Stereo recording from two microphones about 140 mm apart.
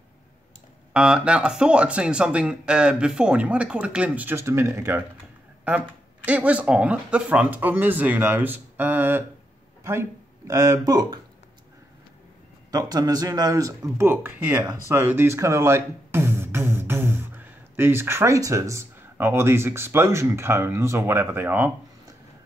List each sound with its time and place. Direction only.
0.9 s speech: 5° right (ahead or behind); by 11.1 s 25° right (ahead or behind)
12.7 s speech: 25° right (ahead or behind)